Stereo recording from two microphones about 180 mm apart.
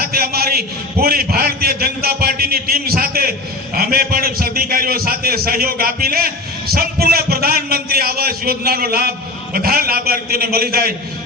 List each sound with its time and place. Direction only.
0.0 s a man's voice: 55° right (ahead or behind)